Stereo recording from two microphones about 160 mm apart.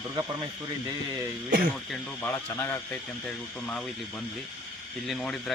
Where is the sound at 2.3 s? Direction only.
10° left (ahead or behind).